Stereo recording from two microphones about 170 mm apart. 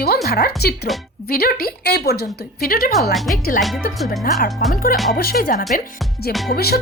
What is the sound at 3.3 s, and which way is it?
A woman's voice, 55° left (ahead or behind).